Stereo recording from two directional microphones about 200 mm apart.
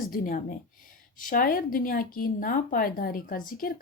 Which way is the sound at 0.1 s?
45° left (ahead or behind).